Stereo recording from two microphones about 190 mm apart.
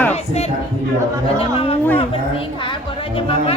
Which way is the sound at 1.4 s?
30° left (ahead or behind).